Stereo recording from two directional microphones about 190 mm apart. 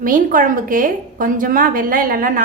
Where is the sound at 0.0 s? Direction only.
45° right (ahead or behind).